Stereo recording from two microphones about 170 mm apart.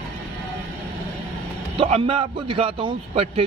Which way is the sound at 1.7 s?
30° right (ahead or behind).